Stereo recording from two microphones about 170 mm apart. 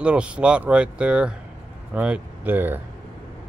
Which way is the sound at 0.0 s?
5° right (ahead or behind).